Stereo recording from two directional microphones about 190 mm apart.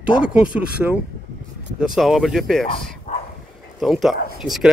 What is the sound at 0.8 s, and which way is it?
Speech, centre (ahead or behind).